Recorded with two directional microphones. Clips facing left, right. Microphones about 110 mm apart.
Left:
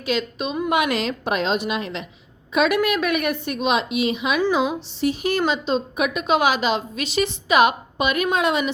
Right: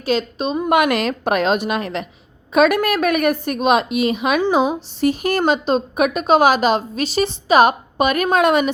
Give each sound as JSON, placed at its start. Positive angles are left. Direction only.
{"t": 0.0, "sound": "a woman's voice", "side_deg": -35}
{"t": 0.7, "sound": "a woman's voice", "side_deg": -60}